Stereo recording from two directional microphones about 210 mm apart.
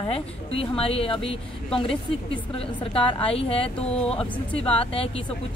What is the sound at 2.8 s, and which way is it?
Speech, 25° left (ahead or behind).